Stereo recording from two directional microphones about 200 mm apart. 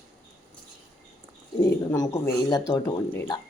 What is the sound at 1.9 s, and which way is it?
Speech, 15° left (ahead or behind).